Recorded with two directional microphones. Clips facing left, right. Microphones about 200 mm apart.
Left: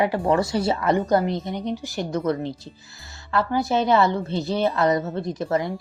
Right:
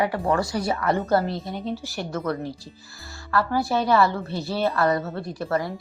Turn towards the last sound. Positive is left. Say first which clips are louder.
# left 2 dB
turn(degrees=20)  # may be behind; listen again after turning